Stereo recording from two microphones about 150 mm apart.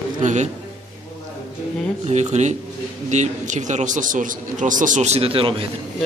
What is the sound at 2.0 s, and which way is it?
A man's voice, 50° right (ahead or behind).